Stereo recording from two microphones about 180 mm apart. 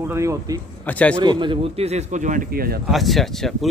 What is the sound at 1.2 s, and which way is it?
A man's voice, 25° right (ahead or behind).